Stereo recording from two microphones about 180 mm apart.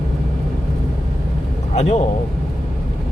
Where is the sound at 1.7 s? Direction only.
40° left (ahead or behind).